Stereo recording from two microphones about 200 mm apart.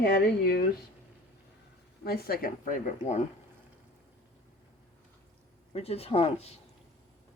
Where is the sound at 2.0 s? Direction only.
50° left (ahead or behind).